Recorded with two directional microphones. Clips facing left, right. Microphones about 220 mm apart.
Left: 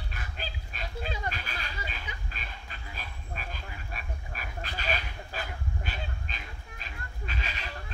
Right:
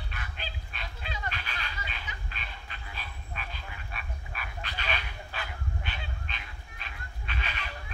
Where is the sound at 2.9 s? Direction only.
40° left (ahead or behind).